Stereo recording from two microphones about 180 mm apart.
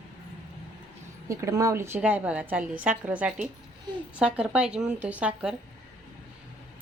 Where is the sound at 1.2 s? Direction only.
15° right (ahead or behind).